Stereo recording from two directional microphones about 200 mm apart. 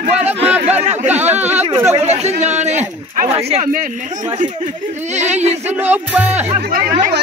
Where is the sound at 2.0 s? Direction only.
35° right (ahead or behind).